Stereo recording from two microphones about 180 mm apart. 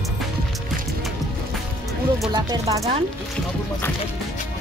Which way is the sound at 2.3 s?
20° right (ahead or behind).